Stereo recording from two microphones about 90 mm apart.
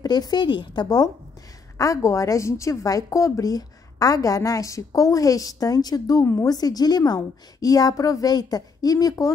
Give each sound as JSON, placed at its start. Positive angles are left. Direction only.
{"t": 0.0, "sound": "a woman's voice", "side_deg": 50}